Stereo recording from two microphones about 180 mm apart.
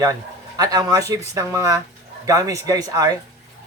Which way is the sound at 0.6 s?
20° right (ahead or behind).